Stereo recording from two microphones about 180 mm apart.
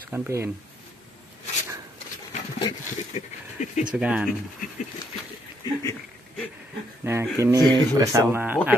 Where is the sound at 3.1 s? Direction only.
40° left (ahead or behind).